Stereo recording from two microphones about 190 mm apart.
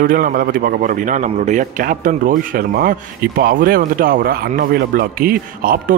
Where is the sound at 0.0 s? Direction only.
50° right (ahead or behind).